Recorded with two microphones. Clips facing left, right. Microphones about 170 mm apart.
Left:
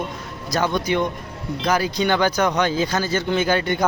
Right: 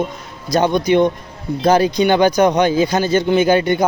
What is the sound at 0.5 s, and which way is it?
A man's voice, 20° right (ahead or behind).